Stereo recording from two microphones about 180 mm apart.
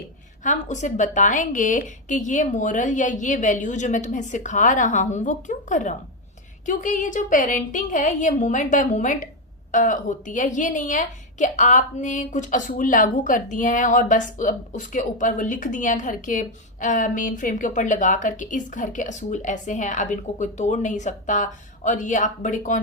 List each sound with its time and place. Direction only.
0.4 s a woman's voice: 45° left (ahead or behind)